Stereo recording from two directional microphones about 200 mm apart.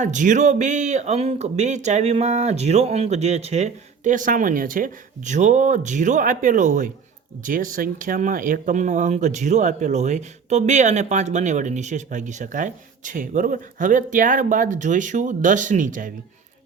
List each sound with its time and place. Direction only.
0.0 s speech: 40° right (ahead or behind)